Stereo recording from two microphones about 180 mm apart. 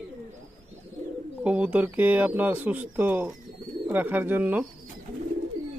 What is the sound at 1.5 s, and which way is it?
Speech, 10° right (ahead or behind).